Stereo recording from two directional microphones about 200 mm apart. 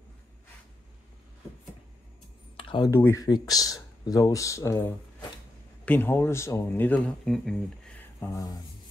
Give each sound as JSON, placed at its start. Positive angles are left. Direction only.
{"t": 2.5, "sound": "a sound", "side_deg": 25}
{"t": 2.9, "sound": "speech", "side_deg": 15}
{"t": 8.3, "sound": "speech", "side_deg": 15}